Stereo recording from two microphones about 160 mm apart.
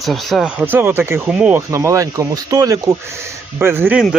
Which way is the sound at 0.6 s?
15° right (ahead or behind).